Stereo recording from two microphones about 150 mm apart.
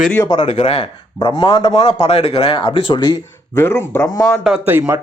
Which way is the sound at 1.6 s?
45° left (ahead or behind).